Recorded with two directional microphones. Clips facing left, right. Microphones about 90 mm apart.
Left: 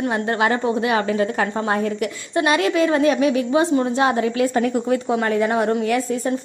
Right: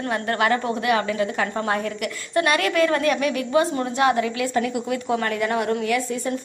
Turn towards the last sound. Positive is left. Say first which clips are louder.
# left 4 dB
turn(degrees=25)  # may be behind; listen again after turning